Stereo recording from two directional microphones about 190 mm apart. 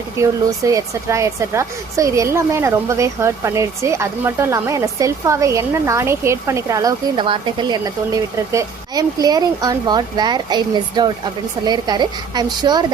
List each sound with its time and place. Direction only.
0.2 s a woman's voice: 15° right (ahead or behind)